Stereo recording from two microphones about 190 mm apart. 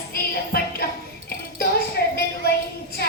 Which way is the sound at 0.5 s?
55° left (ahead or behind).